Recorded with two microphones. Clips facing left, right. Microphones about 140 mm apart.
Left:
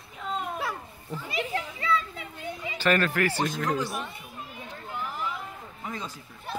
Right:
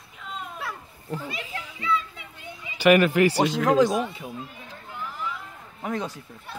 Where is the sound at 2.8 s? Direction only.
15° right (ahead or behind).